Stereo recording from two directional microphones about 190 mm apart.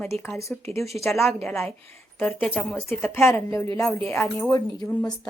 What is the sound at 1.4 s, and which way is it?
A woman's voice, 10° left (ahead or behind).